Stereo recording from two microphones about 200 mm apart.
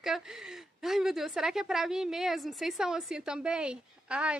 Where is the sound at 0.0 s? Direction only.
Centre (ahead or behind).